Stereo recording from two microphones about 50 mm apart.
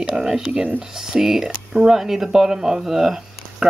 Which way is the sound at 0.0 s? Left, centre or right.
Centre.